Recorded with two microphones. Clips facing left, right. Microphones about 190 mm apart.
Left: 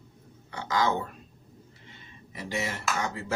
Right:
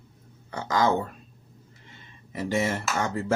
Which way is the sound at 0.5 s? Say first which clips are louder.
Right 3 dB; 45° right (ahead or behind).